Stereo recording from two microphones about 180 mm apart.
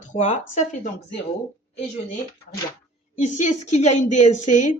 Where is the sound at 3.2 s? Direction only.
40° left (ahead or behind).